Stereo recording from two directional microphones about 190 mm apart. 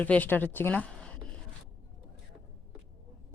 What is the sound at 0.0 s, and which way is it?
A woman's voice, 10° left (ahead or behind).